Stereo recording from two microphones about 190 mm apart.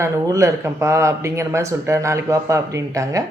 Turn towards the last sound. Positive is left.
turn(degrees=-15)  # may be behind; listen again after turning